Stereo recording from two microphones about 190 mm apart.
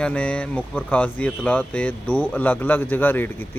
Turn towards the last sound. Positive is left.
turn(degrees=10)  # may be behind; listen again after turning